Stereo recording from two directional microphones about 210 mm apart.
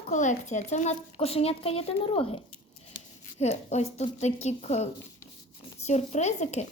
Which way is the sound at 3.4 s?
30° left (ahead or behind).